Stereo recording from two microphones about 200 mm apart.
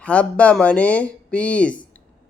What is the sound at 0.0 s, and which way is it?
Speech, 5° left (ahead or behind).